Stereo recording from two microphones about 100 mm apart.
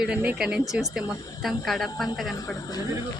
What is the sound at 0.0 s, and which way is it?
A woman's voice, 15° right (ahead or behind).